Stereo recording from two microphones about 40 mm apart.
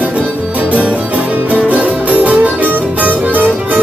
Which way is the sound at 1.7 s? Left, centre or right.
Right.